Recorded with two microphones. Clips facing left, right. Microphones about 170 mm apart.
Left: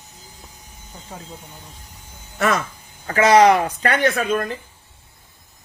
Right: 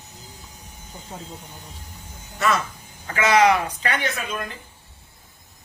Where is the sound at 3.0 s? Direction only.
35° left (ahead or behind).